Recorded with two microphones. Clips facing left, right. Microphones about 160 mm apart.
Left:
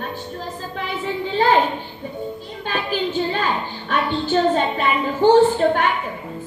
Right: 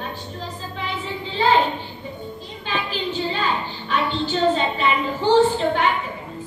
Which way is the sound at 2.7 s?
50° left (ahead or behind).